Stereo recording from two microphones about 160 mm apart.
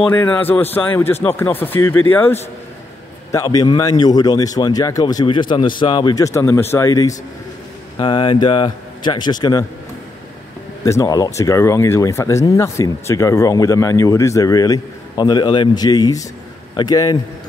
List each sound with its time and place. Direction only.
0.0 s speech: 15° left (ahead or behind)
10.8 s speech: 20° left (ahead or behind)